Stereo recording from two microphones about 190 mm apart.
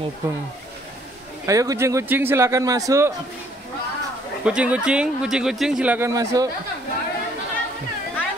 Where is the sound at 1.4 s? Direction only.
15° right (ahead or behind).